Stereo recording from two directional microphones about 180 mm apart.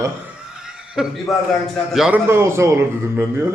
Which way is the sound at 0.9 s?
5° right (ahead or behind).